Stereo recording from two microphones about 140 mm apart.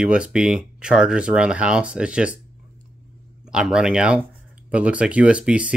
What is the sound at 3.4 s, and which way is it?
Speech, 5° right (ahead or behind).